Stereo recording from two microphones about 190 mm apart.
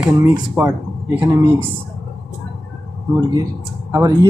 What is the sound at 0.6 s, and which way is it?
Speech, 10° right (ahead or behind).